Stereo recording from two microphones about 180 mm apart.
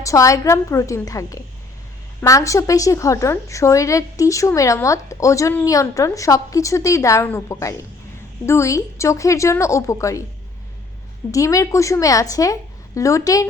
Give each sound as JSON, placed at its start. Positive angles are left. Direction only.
{"t": 0.0, "sound": "a woman's voice", "side_deg": 20}
{"t": 11.3, "sound": "a woman's voice", "side_deg": 20}